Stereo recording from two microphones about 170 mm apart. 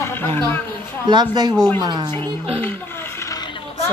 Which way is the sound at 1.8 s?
25° right (ahead or behind).